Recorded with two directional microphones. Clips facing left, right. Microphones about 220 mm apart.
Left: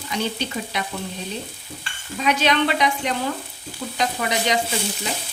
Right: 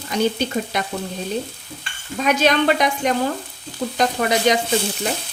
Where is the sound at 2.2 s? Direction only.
45° right (ahead or behind).